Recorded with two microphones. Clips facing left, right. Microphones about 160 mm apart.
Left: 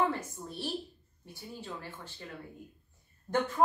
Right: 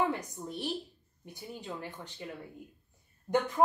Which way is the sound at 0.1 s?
15° right (ahead or behind).